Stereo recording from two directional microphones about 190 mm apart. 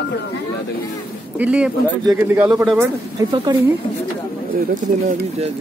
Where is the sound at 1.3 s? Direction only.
5° right (ahead or behind).